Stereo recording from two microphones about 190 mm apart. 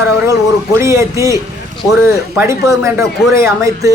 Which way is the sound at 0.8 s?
15° right (ahead or behind).